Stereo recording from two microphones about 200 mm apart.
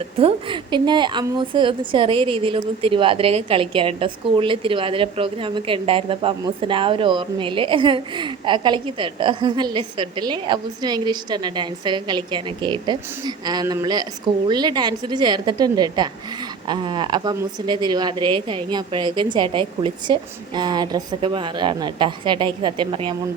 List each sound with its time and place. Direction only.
0.2 s a woman's voice: 25° right (ahead or behind)